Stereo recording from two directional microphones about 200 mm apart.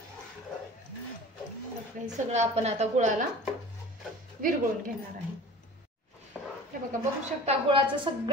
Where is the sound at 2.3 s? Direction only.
35° right (ahead or behind).